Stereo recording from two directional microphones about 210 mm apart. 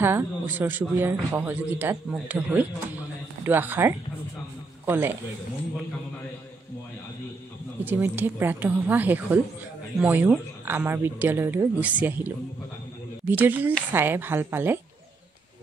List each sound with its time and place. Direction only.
0.0 s a man's voice: 10° right (ahead or behind)
7.8 s a man's voice: 10° right (ahead or behind)
13.3 s a man's voice: 10° right (ahead or behind)